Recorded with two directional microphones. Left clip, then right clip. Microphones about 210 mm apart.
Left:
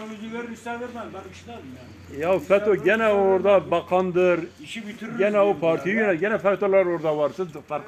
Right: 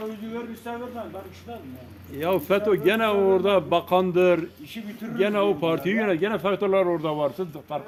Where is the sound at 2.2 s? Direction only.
55° right (ahead or behind).